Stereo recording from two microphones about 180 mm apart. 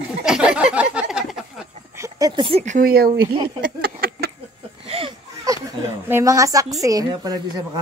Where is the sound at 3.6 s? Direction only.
55° right (ahead or behind).